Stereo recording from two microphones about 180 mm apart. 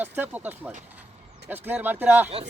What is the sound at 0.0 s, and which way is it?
Speech, 10° right (ahead or behind).